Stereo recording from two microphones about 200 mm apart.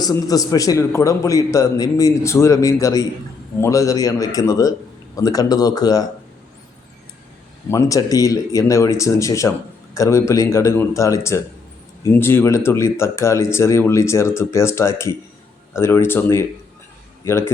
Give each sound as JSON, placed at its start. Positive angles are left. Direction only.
{"t": 0.0, "sound": "a man's voice", "side_deg": 15}
{"t": 7.7, "sound": "a man's voice", "side_deg": 15}